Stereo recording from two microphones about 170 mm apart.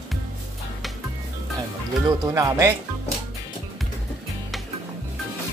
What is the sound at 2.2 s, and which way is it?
Speech, 20° right (ahead or behind).